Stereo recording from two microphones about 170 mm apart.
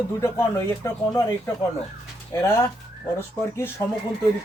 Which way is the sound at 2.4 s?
15° left (ahead or behind).